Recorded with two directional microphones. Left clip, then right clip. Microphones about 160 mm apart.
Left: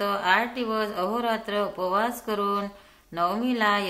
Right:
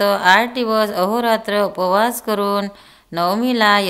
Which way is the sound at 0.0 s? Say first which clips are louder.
Right 10 dB; 40° right (ahead or behind).